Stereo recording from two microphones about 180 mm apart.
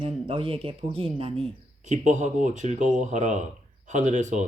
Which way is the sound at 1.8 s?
40° right (ahead or behind).